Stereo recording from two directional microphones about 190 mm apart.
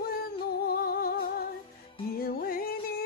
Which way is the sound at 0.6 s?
50° left (ahead or behind).